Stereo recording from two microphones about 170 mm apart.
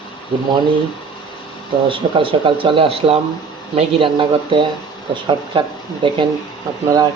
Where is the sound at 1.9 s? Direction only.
30° right (ahead or behind).